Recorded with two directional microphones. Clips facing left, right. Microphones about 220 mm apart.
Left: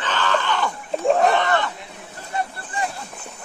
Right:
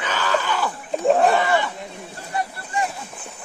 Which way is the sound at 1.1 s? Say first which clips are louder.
Right 1 dB; centre (ahead or behind).